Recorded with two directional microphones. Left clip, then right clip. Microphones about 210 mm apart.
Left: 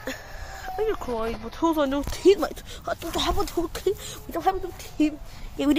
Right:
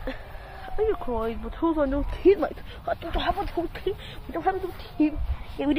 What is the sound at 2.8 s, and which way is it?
Speech, 35° left (ahead or behind).